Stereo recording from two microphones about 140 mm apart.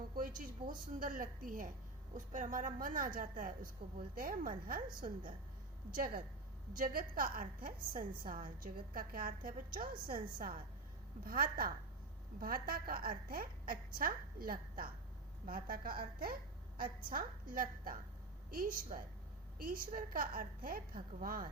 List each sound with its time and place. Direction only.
0.2 s a woman's voice: 75° right (ahead or behind)
2.1 s a woman's voice: 65° right (ahead or behind); by 4.8 s 85° right
4.9 s a woman's voice: 75° right (ahead or behind)
5.9 s a woman's voice: 85° right